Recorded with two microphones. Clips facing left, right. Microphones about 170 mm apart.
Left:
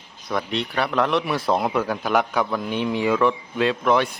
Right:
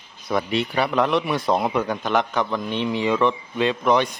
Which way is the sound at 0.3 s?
5° right (ahead or behind).